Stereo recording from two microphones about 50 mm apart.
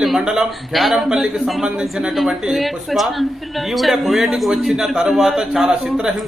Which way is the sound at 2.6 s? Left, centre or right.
Centre.